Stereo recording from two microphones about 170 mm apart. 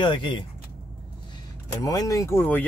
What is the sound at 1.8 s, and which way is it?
Speech, 20° left (ahead or behind).